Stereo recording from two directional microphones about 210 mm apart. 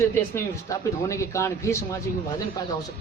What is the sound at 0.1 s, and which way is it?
Speech, 10° left (ahead or behind).